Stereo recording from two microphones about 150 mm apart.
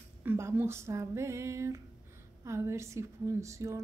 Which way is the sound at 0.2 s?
15° right (ahead or behind).